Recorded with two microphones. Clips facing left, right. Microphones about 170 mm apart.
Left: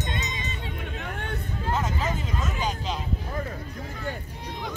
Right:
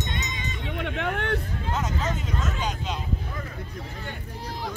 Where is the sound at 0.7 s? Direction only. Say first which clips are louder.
Right 6 dB; 70° right (ahead or behind).